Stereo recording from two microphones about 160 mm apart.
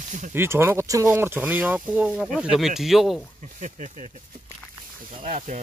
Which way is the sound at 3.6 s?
50° right (ahead or behind).